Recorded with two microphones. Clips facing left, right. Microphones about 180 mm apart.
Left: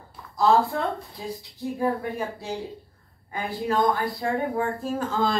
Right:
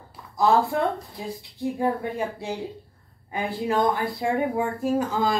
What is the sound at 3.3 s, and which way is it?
Speech, 20° right (ahead or behind).